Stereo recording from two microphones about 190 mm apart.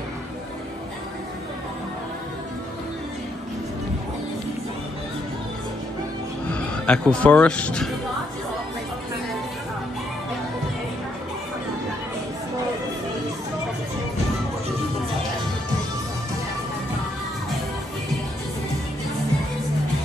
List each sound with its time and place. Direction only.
6.5 s speech: 5° left (ahead or behind)